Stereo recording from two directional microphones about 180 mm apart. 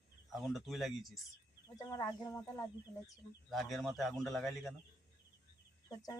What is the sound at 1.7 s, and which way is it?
Speech, 20° left (ahead or behind).